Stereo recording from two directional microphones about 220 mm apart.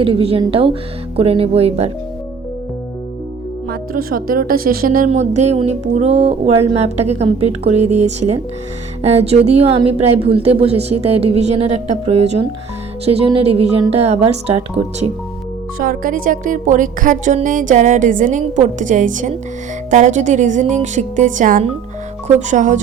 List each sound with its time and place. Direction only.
0.0 s a woman's voice: 25° right (ahead or behind)
3.7 s a woman's voice: 40° right (ahead or behind)
15.8 s speech: 40° right (ahead or behind)